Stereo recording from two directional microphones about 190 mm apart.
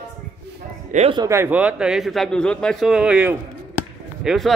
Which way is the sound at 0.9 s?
35° right (ahead or behind).